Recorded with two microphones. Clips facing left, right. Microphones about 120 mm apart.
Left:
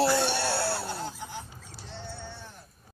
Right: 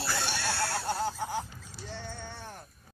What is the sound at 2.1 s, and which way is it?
Sheep, 50° right (ahead or behind).